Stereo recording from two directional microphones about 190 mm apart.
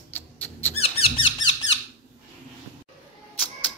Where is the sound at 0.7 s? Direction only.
30° left (ahead or behind).